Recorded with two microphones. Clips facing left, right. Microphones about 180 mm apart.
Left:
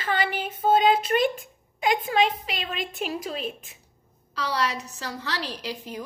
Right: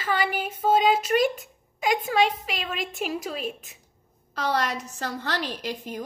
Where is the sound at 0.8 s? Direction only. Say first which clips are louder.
Even; 45° right (ahead or behind).